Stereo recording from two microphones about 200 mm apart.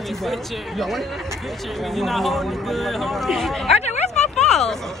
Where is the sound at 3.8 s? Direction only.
35° left (ahead or behind).